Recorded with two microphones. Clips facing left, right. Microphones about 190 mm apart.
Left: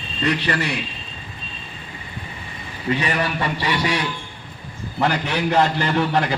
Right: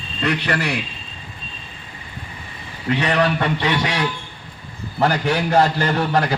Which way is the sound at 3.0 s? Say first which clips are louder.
Right 4 dB; 60° right (ahead or behind).